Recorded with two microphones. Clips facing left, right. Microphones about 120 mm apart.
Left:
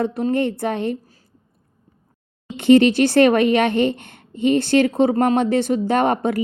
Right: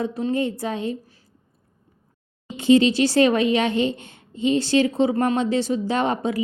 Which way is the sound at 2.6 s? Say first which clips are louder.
Left 3 dB; 60° left (ahead or behind).